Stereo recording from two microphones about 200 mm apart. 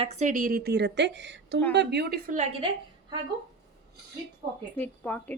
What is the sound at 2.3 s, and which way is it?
Speech, 35° right (ahead or behind).